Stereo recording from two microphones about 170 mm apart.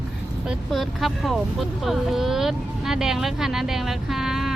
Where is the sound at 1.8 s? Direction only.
Centre (ahead or behind).